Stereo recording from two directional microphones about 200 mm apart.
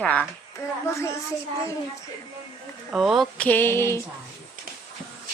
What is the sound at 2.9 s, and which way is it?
A woman's voice, centre (ahead or behind).